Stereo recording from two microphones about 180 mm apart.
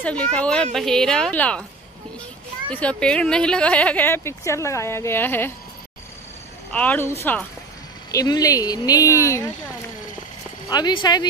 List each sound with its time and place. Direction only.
0.0 s a woman's voice: 5° left (ahead or behind)
2.7 s speech: 5° left (ahead or behind)
6.7 s speech: 10° left (ahead or behind)
10.7 s speech: 25° left (ahead or behind)